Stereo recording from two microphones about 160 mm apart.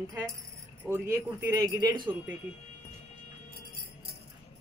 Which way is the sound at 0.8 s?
15° right (ahead or behind).